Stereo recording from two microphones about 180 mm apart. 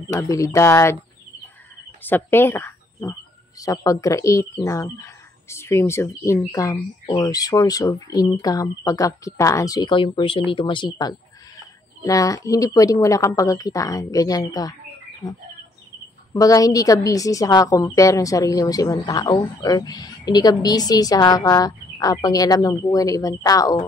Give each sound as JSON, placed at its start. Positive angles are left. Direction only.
{"t": 0.1, "sound": "speech", "side_deg": 15}
{"t": 2.0, "sound": "speech", "side_deg": 10}
{"t": 16.3, "sound": "speech", "side_deg": 20}